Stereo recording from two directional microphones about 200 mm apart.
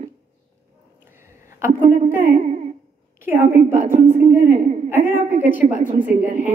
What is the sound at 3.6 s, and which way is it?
A woman's voice, 30° right (ahead or behind).